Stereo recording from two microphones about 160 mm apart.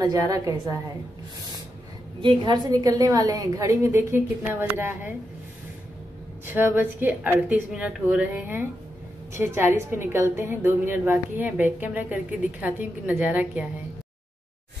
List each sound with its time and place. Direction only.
0.0 s a woman's voice: 25° right (ahead or behind)
2.2 s a woman's voice: 30° right (ahead or behind); by 5.1 s 10° right (ahead or behind)
6.4 s a woman's voice: 10° right (ahead or behind)